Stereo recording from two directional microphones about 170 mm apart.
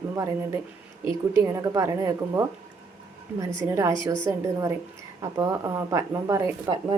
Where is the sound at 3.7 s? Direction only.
15° right (ahead or behind).